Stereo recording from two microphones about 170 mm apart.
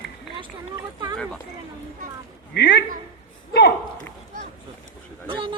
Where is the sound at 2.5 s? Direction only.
80° left.